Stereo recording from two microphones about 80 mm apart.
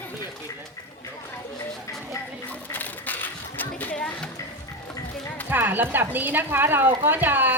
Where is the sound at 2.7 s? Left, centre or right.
Left.